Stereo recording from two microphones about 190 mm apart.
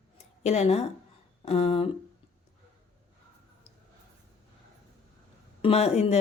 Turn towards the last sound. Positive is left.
turn(degrees=35)  # may be behind; listen again after turning